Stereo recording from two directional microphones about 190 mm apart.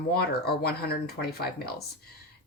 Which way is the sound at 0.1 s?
55° left (ahead or behind).